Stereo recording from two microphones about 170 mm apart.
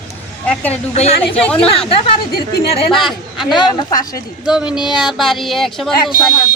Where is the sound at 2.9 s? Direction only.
Centre (ahead or behind).